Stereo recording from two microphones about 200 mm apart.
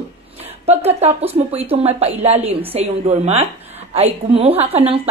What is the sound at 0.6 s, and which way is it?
A woman's voice, 30° right (ahead or behind).